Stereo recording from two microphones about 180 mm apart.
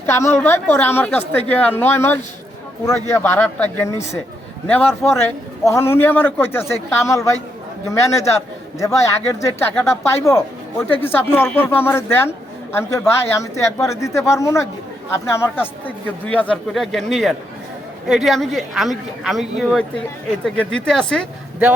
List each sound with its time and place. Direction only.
0.0 s a woman's voice: 15° left (ahead or behind)